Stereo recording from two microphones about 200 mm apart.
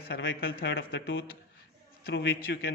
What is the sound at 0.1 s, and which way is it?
Speech, 55° left (ahead or behind).